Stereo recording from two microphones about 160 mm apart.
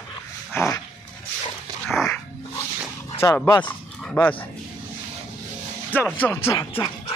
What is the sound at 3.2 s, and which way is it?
Roaring cats, 20° left (ahead or behind).